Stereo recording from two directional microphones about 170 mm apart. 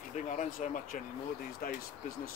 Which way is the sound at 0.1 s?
45° left (ahead or behind).